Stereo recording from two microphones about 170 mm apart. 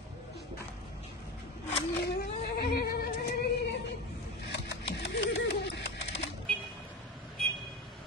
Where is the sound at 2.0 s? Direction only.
70° left (ahead or behind); by 3.8 s 90° left.